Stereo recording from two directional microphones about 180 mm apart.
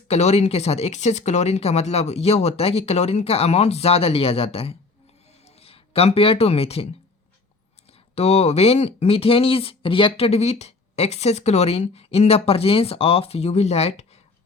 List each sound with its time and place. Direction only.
0.1 s speech: 35° left (ahead or behind)
8.1 s speech: 35° left (ahead or behind)